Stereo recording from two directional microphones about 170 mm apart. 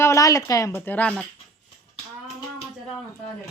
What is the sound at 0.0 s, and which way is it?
A woman's voice, 20° left (ahead or behind).